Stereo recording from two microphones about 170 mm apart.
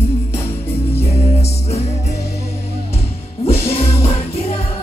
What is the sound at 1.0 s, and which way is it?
Music, 40° left (ahead or behind).